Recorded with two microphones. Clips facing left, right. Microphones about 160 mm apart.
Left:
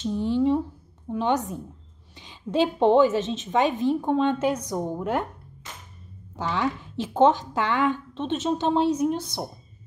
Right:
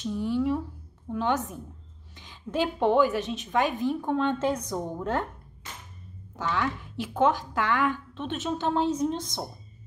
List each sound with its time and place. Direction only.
0.0 s a woman's voice: 25° left (ahead or behind)
6.3 s a woman's voice: 20° left (ahead or behind)